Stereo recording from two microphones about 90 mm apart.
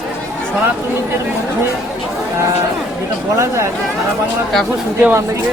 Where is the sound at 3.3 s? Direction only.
35° right (ahead or behind).